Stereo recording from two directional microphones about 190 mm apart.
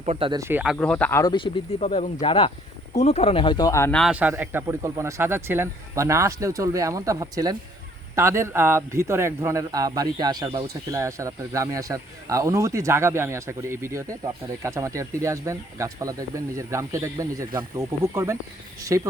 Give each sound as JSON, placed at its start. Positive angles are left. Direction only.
{"t": 0.0, "sound": "speech", "side_deg": -30}
{"t": 0.3, "sound": "a man's voice", "side_deg": -15}
{"t": 0.6, "sound": "speech", "side_deg": 0}
{"t": 1.2, "sound": "speech", "side_deg": 25}
{"t": 3.9, "sound": "a man's voice", "side_deg": -5}